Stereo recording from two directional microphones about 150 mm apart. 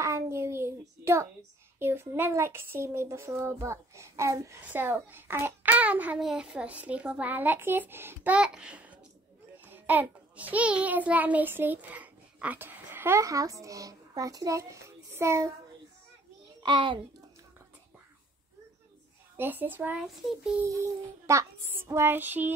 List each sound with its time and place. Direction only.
0.0 s child singing: 20° right (ahead or behind)
1.8 s a child's voice: 15° right (ahead or behind)
16.6 s a child's voice: 30° right (ahead or behind)
19.3 s speech: 15° right (ahead or behind)
20.1 s child singing: centre (ahead or behind)
20.5 s speech: 20° right (ahead or behind)